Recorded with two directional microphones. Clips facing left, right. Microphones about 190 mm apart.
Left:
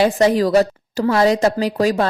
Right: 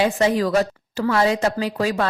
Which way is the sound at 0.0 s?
35° left (ahead or behind).